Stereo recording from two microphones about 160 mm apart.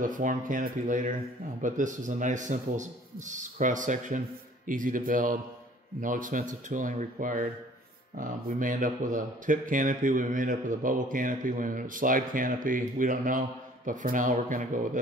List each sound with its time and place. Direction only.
0.0 s speech: 55° right (ahead or behind)